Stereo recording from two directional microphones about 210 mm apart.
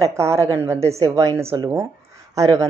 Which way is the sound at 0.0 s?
15° right (ahead or behind).